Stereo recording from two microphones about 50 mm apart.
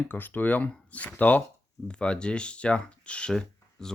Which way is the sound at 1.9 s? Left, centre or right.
Left.